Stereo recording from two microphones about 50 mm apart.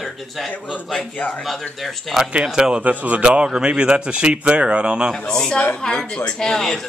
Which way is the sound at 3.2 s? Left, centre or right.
Centre.